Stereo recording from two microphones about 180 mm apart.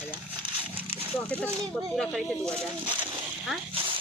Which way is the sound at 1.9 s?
5° left (ahead or behind).